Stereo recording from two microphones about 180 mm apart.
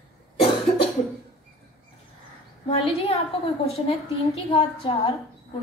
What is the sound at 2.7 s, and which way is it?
A woman's voice, 30° left (ahead or behind).